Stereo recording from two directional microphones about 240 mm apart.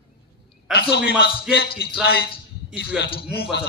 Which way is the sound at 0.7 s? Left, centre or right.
Left.